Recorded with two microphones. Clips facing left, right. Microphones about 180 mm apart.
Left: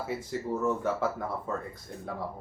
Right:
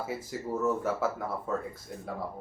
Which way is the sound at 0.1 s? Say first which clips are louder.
Left 2 dB; 5° right (ahead or behind).